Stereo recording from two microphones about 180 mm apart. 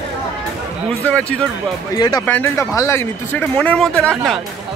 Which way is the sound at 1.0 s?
5° left (ahead or behind).